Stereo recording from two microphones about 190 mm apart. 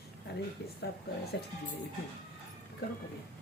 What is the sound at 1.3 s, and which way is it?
Speech, 65° left (ahead or behind).